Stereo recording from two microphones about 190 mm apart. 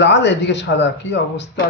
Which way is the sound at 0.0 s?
65° left (ahead or behind).